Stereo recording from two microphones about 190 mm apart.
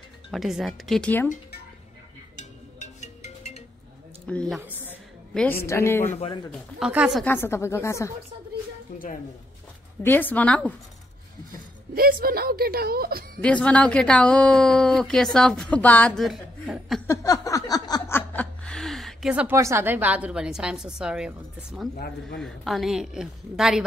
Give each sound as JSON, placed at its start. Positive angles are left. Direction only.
{"t": 0.3, "sound": "speech", "side_deg": 0}
{"t": 2.3, "sound": "music", "side_deg": 35}
{"t": 4.3, "sound": "speech", "side_deg": 5}
{"t": 4.6, "sound": "speech", "side_deg": -10}
{"t": 5.3, "sound": "a woman's voice", "side_deg": 5}
{"t": 6.1, "sound": "speech", "side_deg": 30}
{"t": 6.5, "sound": "speech", "side_deg": -5}
{"t": 7.2, "sound": "speech", "side_deg": 10}
{"t": 10.0, "sound": "speech", "side_deg": 10}
{"t": 11.9, "sound": "a woman's voice", "side_deg": -50}
{"t": 13.4, "sound": "speech", "side_deg": 5}
{"t": 17.1, "sound": "a sound", "side_deg": 15}
{"t": 21.9, "sound": "speech", "side_deg": 55}
{"t": 22.4, "sound": "speech", "side_deg": 0}